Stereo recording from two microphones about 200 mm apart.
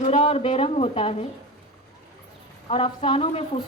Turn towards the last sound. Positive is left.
turn(degrees=30)  # may be behind; listen again after turning